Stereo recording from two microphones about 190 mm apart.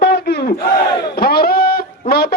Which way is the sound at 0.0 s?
55° left (ahead or behind).